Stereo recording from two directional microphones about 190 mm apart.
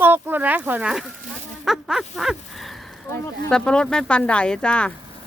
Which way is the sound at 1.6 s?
Centre (ahead or behind).